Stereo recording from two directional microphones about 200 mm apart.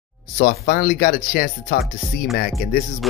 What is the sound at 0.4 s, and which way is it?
Speech, 45° left (ahead or behind).